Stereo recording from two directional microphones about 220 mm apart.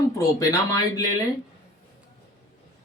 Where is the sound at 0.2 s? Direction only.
15° left (ahead or behind).